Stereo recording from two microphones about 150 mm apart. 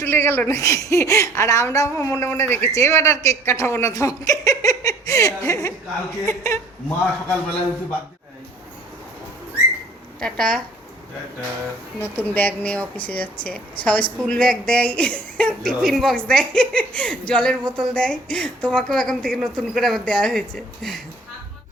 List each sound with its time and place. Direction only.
0.0 s a woman's voice: 15° left (ahead or behind)
10.2 s speech: 5° left (ahead or behind)
11.9 s a man's voice: 15° left (ahead or behind)